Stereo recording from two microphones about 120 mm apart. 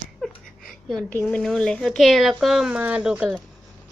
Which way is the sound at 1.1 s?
15° left (ahead or behind).